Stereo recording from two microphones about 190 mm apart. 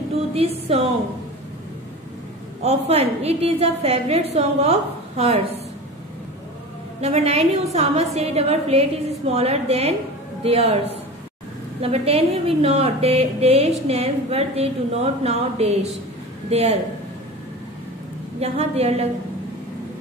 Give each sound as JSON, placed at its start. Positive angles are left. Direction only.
{"t": 0.3, "sound": "a woman's voice", "side_deg": -30}
{"t": 2.6, "sound": "a woman's voice", "side_deg": -35}
{"t": 7.0, "sound": "a woman's voice", "side_deg": -35}
{"t": 18.4, "sound": "a woman's voice", "side_deg": -35}